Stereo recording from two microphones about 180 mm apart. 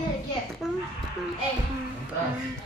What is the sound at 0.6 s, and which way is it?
Speech, 5° right (ahead or behind).